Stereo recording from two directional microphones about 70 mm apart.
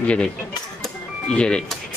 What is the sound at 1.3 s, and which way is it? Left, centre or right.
Speech, centre.